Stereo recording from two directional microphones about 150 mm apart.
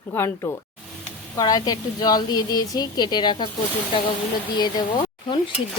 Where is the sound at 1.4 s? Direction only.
25° left (ahead or behind).